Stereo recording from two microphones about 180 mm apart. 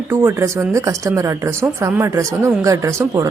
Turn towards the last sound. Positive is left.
turn(degrees=-20)  # may be behind; listen again after turning